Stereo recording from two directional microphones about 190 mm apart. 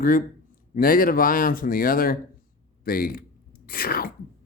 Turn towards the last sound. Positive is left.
turn(degrees=50)  # may be behind; listen again after turning